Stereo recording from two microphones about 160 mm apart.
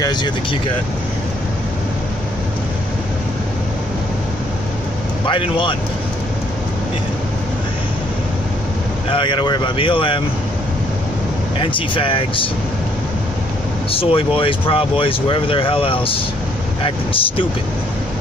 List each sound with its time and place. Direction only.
0.0 s speech: 25° left (ahead or behind)
5.2 s speech: 30° left (ahead or behind)
9.1 s speech: 30° left (ahead or behind)
11.6 s speech: 30° left (ahead or behind)
13.9 s speech: 35° left (ahead or behind)